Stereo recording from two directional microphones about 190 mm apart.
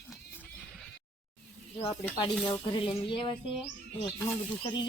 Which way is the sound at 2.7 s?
25° left (ahead or behind).